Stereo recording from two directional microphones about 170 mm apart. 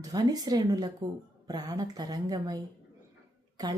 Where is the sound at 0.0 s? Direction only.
20° right (ahead or behind).